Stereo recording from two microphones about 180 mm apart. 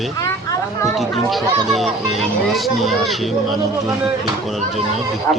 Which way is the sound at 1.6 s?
Centre (ahead or behind).